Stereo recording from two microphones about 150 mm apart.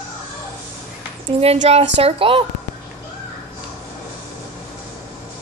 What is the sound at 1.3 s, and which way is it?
A woman's voice, 45° right (ahead or behind).